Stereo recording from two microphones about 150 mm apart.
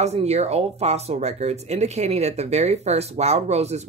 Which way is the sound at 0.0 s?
45° right (ahead or behind).